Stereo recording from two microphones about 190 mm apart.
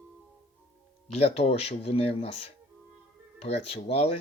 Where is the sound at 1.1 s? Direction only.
35° left (ahead or behind).